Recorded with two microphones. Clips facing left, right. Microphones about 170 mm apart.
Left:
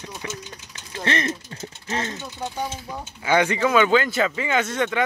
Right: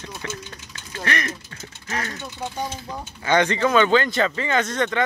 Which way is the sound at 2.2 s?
5° left (ahead or behind).